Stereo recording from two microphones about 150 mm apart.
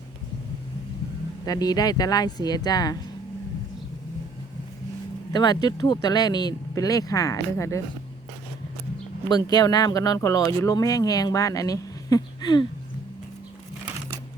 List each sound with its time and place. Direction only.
1.5 s speech: 25° left (ahead or behind)
5.3 s speech: 30° left (ahead or behind)
9.3 s speech: 25° left (ahead or behind)